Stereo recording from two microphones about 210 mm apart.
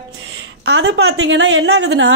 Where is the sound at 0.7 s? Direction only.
55° right (ahead or behind).